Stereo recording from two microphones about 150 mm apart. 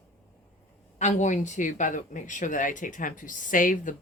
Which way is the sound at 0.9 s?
55° left (ahead or behind).